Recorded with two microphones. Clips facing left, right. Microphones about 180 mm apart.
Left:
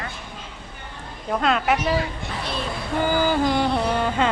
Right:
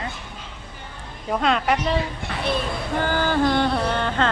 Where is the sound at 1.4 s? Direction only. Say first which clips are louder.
Even; 5° left (ahead or behind).